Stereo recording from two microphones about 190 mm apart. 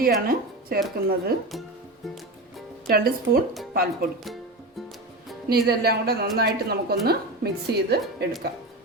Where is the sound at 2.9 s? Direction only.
50° right (ahead or behind).